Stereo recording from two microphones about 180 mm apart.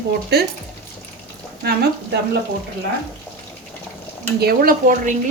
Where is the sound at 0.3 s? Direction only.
65° right (ahead or behind).